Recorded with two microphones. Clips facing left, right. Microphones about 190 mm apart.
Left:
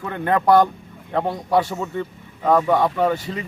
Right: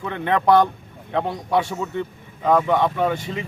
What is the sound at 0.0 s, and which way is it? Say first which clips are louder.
Speech: left 1 dB; 5° left (ahead or behind).